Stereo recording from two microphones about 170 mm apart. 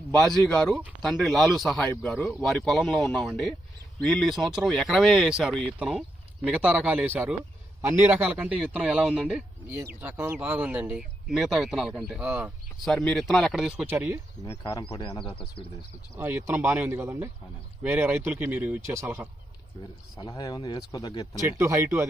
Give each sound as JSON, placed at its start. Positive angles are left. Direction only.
{"t": 0.1, "sound": "speech", "side_deg": 0}
{"t": 14.4, "sound": "speech", "side_deg": 20}
{"t": 16.1, "sound": "speech", "side_deg": -10}
{"t": 20.1, "sound": "speech", "side_deg": 25}
{"t": 21.4, "sound": "speech", "side_deg": -20}